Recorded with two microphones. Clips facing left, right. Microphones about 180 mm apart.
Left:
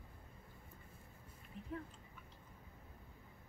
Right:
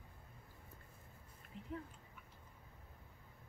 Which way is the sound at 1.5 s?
20° right (ahead or behind).